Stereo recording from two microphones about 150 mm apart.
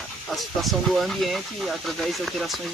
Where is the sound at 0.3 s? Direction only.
Centre (ahead or behind).